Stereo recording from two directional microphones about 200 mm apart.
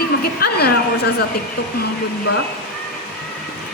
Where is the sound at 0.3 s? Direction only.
50° left (ahead or behind).